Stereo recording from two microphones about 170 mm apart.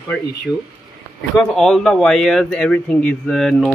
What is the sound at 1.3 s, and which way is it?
Speech, centre (ahead or behind).